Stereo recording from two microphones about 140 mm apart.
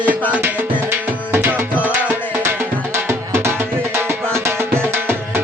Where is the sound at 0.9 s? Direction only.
15° right (ahead or behind).